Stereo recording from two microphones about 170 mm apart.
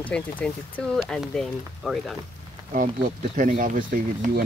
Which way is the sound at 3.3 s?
50° right (ahead or behind).